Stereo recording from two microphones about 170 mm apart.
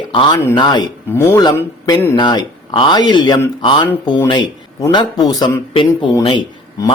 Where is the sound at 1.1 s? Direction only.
15° left (ahead or behind).